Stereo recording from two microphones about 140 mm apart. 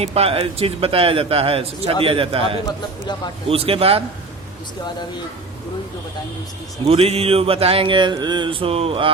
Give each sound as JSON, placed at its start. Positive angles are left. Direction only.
{"t": 0.0, "sound": "a man's voice", "side_deg": -45}
{"t": 6.8, "sound": "a man's voice", "side_deg": -45}